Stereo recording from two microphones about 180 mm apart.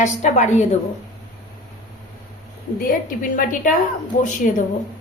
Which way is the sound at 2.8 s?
50° left (ahead or behind).